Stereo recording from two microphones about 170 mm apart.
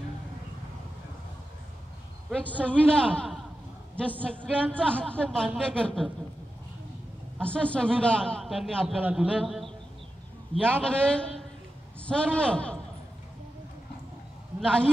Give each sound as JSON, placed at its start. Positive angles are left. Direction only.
{"t": 2.3, "sound": "a man's voice", "side_deg": 5}
{"t": 7.3, "sound": "a man's voice", "side_deg": 5}
{"t": 10.7, "sound": "a man's voice", "side_deg": 5}
{"t": 14.6, "sound": "a man's voice", "side_deg": 5}